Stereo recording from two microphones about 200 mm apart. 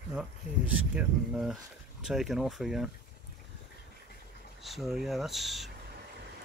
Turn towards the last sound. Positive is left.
turn(degrees=0)  # may be behind; listen again after turning